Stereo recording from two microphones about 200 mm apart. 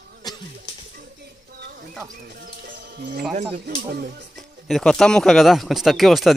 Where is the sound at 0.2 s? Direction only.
20° left (ahead or behind).